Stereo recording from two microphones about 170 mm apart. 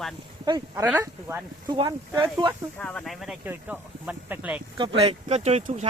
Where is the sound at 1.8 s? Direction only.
30° right (ahead or behind).